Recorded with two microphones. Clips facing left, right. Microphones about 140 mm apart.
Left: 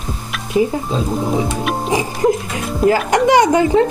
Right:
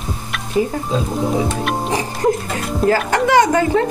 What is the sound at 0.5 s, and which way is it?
Speech, 10° left (ahead or behind).